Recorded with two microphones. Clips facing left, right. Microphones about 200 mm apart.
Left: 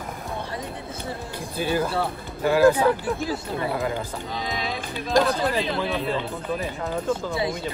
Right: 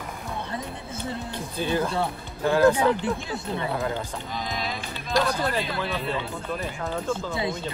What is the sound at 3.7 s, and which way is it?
Speech, centre (ahead or behind).